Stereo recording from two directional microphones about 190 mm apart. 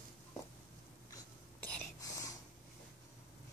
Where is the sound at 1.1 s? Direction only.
15° left (ahead or behind).